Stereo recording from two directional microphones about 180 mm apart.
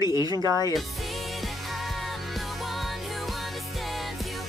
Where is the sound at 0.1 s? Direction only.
20° right (ahead or behind).